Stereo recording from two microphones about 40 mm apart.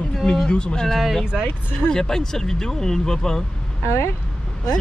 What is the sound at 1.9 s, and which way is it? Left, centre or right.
Speech, centre.